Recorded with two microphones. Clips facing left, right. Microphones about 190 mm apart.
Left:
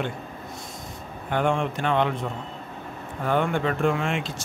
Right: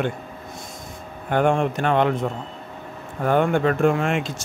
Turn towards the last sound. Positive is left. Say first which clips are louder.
# right 4 dB
turn(degrees=-45)  # may be behind; listen again after turning